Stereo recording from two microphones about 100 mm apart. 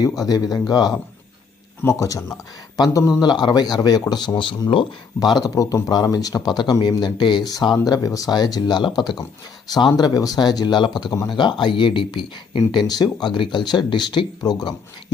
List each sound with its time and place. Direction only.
0.2 s speech: 40° left (ahead or behind)
1.8 s speech: 30° left (ahead or behind)